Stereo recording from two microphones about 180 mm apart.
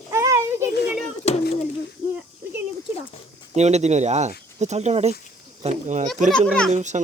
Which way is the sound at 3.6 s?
40° right (ahead or behind).